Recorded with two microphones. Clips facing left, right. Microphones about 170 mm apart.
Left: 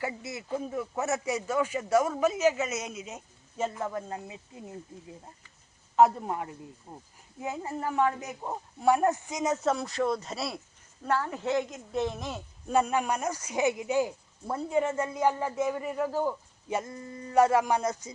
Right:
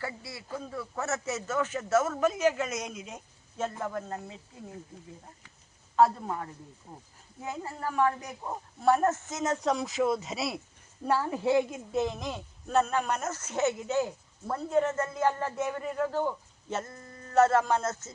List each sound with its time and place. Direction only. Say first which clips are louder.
0.0 s a woman's voice: left 4 dB; 20° left (ahead or behind)
6.0 s a woman's voice: left 2 dB; 20° left (ahead or behind); by 10.6 s centre (ahead or behind)
11.0 s a woman's voice: right 2 dB; 15° right (ahead or behind); by 18.1 s 15° left (ahead or behind)